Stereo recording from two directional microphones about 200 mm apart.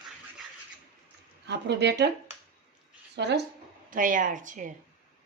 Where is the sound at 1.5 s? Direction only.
55° right (ahead or behind).